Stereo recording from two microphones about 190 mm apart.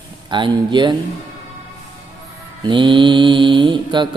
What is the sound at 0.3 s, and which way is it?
Mantra, 25° right (ahead or behind).